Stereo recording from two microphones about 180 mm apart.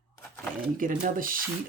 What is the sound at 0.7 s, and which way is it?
Speech, 50° right (ahead or behind).